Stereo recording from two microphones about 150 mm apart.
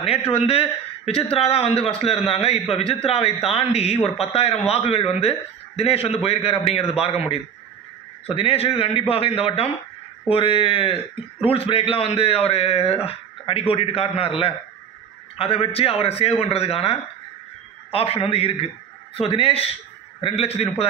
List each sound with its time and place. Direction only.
0.0 s a man's voice: 40° left (ahead or behind)